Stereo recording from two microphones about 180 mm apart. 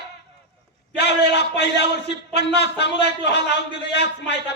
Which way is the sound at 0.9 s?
70° left (ahead or behind).